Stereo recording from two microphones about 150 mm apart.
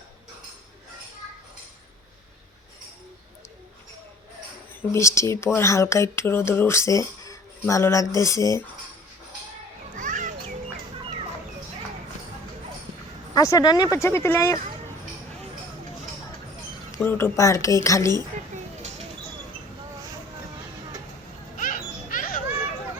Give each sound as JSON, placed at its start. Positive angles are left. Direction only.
{"t": 4.8, "sound": "speech", "side_deg": 20}
{"t": 10.0, "sound": "children playing", "side_deg": -60}
{"t": 13.3, "sound": "speech", "side_deg": 25}
{"t": 17.0, "sound": "speech", "side_deg": 15}
{"t": 21.6, "sound": "a sound", "side_deg": 65}